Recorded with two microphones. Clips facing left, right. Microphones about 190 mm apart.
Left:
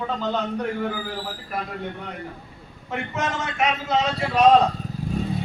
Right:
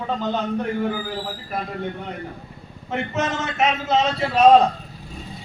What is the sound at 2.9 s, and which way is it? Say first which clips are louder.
Speech: right 3 dB; 25° right (ahead or behind).